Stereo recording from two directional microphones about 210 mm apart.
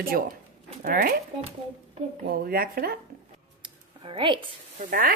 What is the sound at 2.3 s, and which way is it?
Speech, 45° right (ahead or behind).